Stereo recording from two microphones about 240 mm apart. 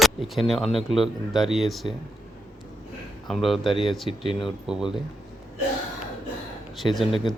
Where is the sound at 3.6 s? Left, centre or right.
Left.